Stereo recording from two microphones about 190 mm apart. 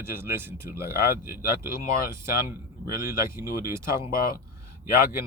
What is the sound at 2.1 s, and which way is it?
Speech, 15° right (ahead or behind).